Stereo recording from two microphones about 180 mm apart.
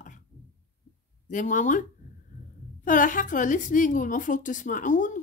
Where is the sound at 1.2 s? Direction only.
45° left (ahead or behind).